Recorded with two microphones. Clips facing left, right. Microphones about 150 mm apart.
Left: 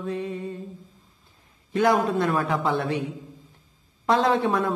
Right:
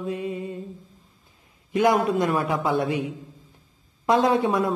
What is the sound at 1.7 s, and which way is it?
Speech, 15° right (ahead or behind).